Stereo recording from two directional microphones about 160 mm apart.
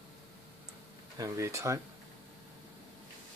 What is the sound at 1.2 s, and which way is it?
Speech, 20° right (ahead or behind).